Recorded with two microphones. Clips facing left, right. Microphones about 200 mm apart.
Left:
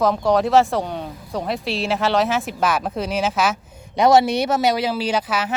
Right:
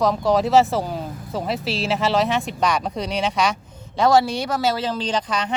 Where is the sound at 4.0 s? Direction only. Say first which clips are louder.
Left 2 dB; 20° left (ahead or behind).